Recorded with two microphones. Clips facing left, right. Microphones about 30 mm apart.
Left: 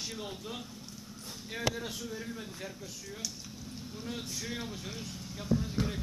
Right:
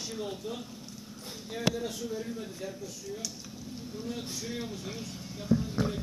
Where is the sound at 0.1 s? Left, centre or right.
Centre.